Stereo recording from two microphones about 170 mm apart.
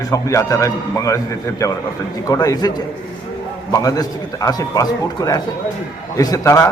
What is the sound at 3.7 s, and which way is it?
A man's voice, 20° left (ahead or behind).